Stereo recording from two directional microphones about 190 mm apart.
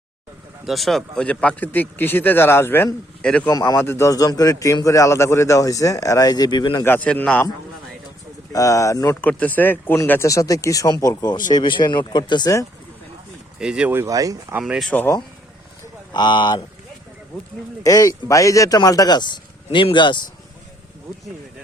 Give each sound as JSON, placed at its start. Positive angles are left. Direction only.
{"t": 0.6, "sound": "speech", "side_deg": 0}
{"t": 3.5, "sound": "speech", "side_deg": 15}
{"t": 6.8, "sound": "speech", "side_deg": 10}
{"t": 8.5, "sound": "speech", "side_deg": 20}
{"t": 13.6, "sound": "speech", "side_deg": -5}
{"t": 14.6, "sound": "speech", "side_deg": 0}
{"t": 16.1, "sound": "speech", "side_deg": 25}
{"t": 17.8, "sound": "speech", "side_deg": 20}